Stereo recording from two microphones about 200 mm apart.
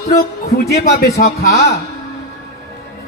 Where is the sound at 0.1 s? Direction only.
50° left (ahead or behind).